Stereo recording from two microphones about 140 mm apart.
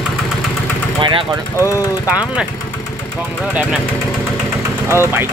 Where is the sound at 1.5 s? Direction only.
20° left (ahead or behind).